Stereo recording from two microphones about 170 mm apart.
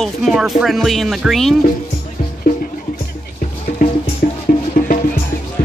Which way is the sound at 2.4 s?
55° left (ahead or behind).